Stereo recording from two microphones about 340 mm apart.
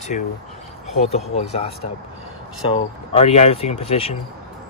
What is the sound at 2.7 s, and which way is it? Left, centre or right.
Speech, centre.